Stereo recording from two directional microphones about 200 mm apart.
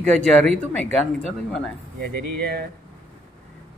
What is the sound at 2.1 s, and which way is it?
Mantra, 50° right (ahead or behind).